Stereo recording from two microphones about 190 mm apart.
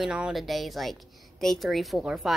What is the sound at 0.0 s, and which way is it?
A woman's voice, 5° right (ahead or behind).